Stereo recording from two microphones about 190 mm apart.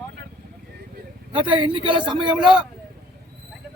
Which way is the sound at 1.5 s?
25° right (ahead or behind).